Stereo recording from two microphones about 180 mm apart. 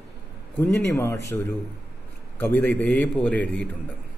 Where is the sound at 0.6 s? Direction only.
10° left (ahead or behind).